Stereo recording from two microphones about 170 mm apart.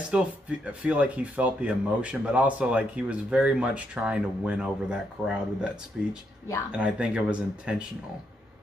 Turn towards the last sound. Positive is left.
turn(degrees=-5)  # may be behind; listen again after turning